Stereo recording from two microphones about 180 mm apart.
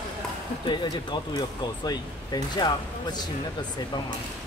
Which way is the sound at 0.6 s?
25° left (ahead or behind).